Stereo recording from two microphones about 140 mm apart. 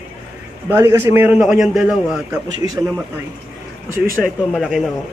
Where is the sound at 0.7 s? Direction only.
20° right (ahead or behind).